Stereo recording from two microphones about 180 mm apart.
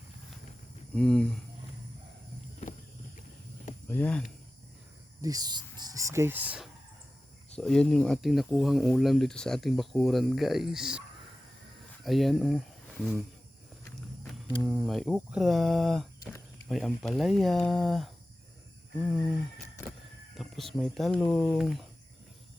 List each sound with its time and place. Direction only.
0.9 s speech: 5° left (ahead or behind)
3.8 s speech: 10° left (ahead or behind)
5.2 s speech: 20° right (ahead or behind)
7.5 s speech: 5° left (ahead or behind)
12.0 s speech: centre (ahead or behind)
14.7 s speech: centre (ahead or behind)
20.3 s a sound: centre (ahead or behind)
20.7 s speech: 5° left (ahead or behind)